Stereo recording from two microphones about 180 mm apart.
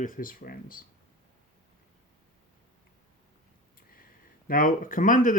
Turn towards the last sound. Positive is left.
turn(degrees=45)  # may be behind; listen again after turning